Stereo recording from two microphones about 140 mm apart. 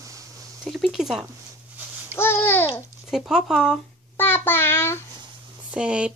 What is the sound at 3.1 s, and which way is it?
Speech, 5° right (ahead or behind).